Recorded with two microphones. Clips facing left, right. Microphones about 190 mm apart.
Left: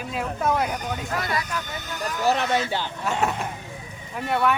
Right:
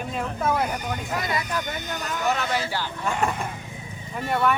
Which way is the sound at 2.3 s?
30° left (ahead or behind).